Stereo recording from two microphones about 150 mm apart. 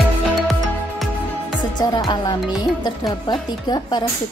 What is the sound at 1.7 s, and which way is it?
Speech, 30° left (ahead or behind).